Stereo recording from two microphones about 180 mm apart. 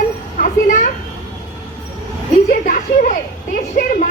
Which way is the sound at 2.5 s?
50° left (ahead or behind).